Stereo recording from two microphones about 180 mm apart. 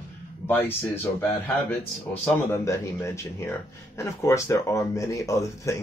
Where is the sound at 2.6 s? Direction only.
15° left (ahead or behind).